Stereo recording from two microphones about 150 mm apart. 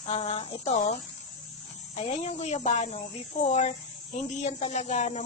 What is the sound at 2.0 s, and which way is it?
Speech, 50° left (ahead or behind).